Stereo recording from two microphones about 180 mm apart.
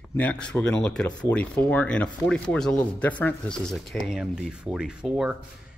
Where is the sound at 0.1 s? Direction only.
10° left (ahead or behind).